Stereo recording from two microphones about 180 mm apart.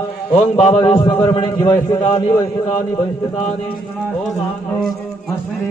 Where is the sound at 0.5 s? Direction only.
35° left (ahead or behind).